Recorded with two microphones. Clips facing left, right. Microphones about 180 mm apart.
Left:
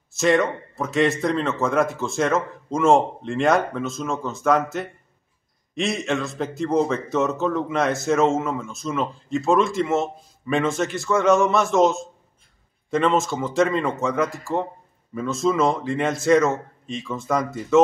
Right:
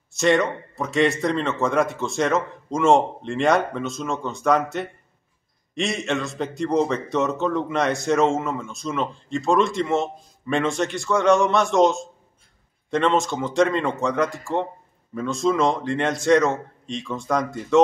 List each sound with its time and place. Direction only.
0.1 s a man's voice: centre (ahead or behind)